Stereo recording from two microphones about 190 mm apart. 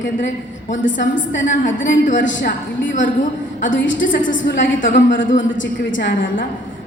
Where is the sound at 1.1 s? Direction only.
75° left (ahead or behind).